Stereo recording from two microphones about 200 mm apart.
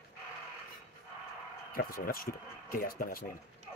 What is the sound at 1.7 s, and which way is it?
Speech, 45° left (ahead or behind).